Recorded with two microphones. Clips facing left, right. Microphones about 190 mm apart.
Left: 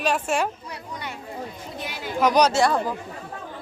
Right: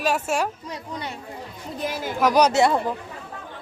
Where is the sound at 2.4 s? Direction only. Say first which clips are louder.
Right 1 dB; 20° right (ahead or behind).